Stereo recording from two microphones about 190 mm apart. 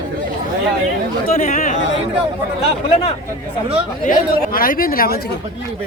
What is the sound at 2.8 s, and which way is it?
Speech, 30° left (ahead or behind).